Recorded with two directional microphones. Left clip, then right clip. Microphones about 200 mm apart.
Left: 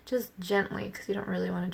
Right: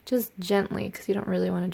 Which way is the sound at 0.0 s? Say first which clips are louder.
Right 4 dB; 40° right (ahead or behind).